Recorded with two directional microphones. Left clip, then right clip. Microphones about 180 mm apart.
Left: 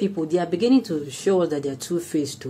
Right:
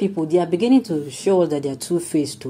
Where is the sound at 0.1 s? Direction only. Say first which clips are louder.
Right 4 dB; 10° right (ahead or behind).